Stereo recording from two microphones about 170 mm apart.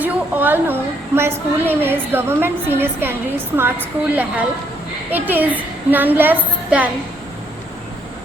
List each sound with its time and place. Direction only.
0.0 s a woman's voice: 10° right (ahead or behind)